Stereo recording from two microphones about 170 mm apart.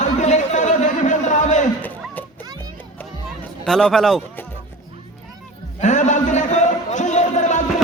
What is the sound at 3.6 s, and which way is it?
Speech, 5° left (ahead or behind).